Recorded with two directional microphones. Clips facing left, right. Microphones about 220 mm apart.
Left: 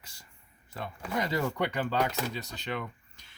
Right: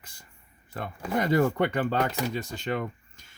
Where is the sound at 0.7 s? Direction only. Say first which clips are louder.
Right 5 dB; 55° right (ahead or behind).